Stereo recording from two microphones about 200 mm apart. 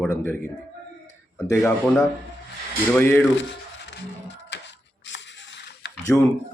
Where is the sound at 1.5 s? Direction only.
10° left (ahead or behind).